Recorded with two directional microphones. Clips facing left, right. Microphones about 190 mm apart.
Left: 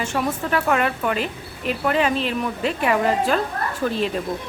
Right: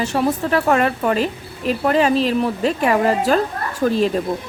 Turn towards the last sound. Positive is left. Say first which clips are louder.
# right 5 dB
turn(degrees=-40)  # may be behind; listen again after turning